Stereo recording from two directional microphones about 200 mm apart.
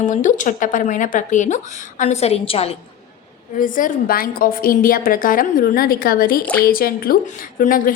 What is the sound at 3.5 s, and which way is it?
A woman's voice, 45° left (ahead or behind).